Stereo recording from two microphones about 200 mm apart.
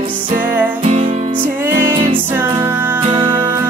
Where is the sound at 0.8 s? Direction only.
30° right (ahead or behind).